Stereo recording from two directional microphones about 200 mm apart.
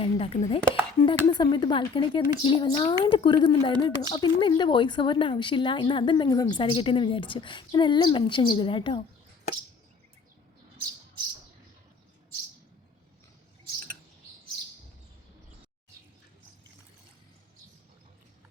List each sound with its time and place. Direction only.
0.0 s speech: 30° left (ahead or behind)